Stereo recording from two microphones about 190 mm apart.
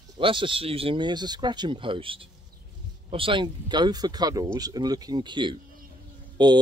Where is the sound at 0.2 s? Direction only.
25° right (ahead or behind).